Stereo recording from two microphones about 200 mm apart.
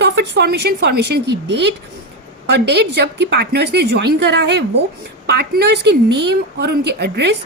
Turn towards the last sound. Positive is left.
turn(degrees=-55)  # may be behind; listen again after turning